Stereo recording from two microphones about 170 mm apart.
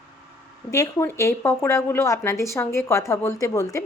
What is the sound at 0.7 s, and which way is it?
Speech, 15° left (ahead or behind).